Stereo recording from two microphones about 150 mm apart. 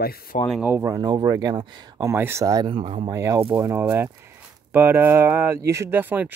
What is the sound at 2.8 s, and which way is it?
Speech, 35° right (ahead or behind).